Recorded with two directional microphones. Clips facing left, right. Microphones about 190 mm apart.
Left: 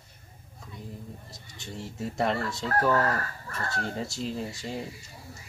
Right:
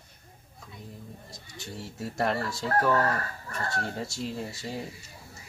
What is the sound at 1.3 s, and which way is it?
Speech, centre (ahead or behind).